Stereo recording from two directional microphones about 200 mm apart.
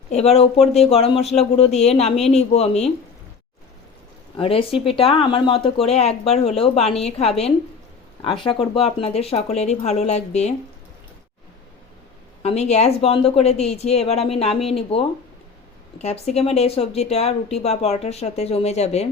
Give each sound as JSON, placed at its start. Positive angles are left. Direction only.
{"t": 0.1, "sound": "speech", "side_deg": 30}
{"t": 4.4, "sound": "speech", "side_deg": 25}
{"t": 12.4, "sound": "speech", "side_deg": 35}
{"t": 16.0, "sound": "speech", "side_deg": 35}